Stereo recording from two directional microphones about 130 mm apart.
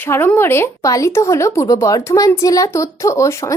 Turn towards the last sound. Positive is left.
turn(degrees=25)  # may be behind; listen again after turning